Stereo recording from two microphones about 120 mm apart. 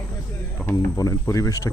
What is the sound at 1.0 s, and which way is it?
Speech, 25° left (ahead or behind).